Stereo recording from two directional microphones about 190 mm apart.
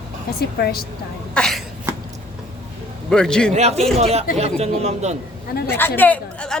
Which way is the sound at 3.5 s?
35° right (ahead or behind).